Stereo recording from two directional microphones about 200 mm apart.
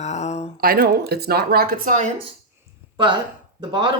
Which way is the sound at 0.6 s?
45° right (ahead or behind).